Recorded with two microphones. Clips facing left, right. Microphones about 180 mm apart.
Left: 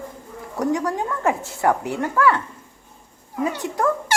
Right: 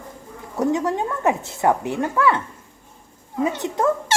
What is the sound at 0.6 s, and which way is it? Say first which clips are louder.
Speech: right 1 dB; 25° right (ahead or behind).